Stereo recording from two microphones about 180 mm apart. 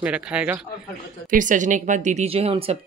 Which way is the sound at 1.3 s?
45° right (ahead or behind).